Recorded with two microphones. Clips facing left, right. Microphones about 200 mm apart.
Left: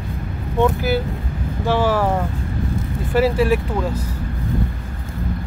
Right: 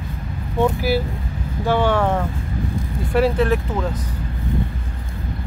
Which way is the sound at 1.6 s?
Centre (ahead or behind).